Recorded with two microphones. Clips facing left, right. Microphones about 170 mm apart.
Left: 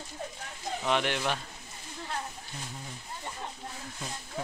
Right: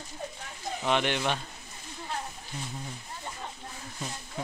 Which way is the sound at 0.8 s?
Centre (ahead or behind).